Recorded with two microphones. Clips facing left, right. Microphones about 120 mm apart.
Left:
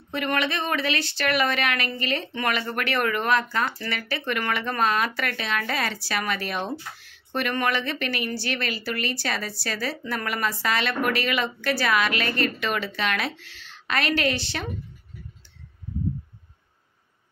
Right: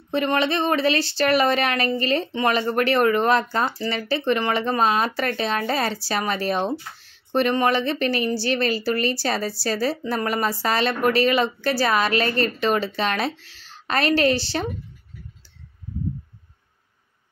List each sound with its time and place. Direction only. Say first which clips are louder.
0.1 s a woman's voice: right 5 dB; 30° right (ahead or behind)